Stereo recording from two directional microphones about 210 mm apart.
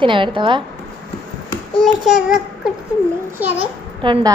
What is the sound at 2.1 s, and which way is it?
Child singing, centre (ahead or behind).